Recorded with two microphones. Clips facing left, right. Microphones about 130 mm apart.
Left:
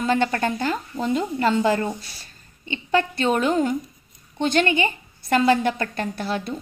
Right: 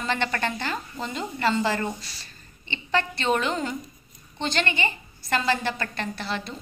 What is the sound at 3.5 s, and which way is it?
Speech, 10° left (ahead or behind).